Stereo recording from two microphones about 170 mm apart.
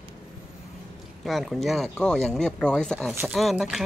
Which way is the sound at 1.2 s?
Centre (ahead or behind).